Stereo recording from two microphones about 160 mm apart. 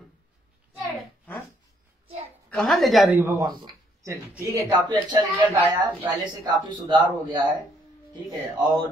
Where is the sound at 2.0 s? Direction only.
35° right (ahead or behind).